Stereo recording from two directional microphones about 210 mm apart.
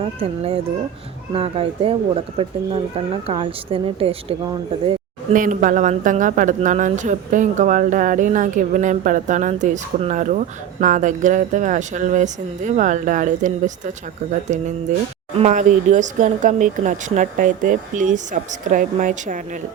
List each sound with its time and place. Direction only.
0.0 s speech: 25° right (ahead or behind)
5.3 s a man's voice: 40° right (ahead or behind)
15.4 s a man's voice: 35° right (ahead or behind)